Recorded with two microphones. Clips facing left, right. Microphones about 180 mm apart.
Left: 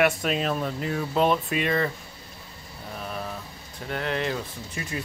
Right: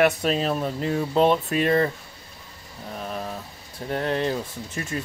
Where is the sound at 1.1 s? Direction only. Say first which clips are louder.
Right 3 dB; 35° right (ahead or behind).